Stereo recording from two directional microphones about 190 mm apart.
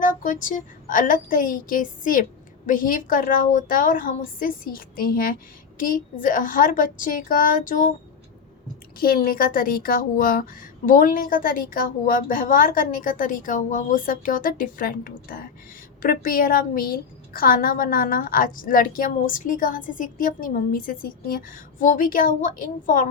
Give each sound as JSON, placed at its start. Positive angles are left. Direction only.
{"t": 0.0, "sound": "a woman's voice", "side_deg": 45}
{"t": 9.0, "sound": "a woman's voice", "side_deg": 50}